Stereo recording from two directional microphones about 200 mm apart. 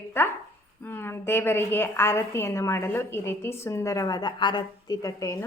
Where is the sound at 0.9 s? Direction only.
10° left (ahead or behind).